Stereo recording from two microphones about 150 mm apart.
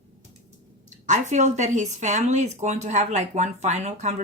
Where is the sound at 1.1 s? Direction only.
50° right (ahead or behind).